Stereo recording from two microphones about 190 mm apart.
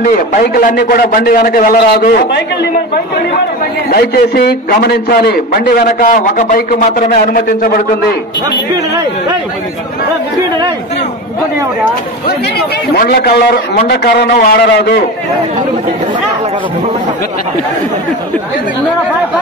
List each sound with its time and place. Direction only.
0.0 s a man's voice: 45° left (ahead or behind)
3.9 s a man's voice: 55° left (ahead or behind)
12.3 s a man's voice: 55° left (ahead or behind)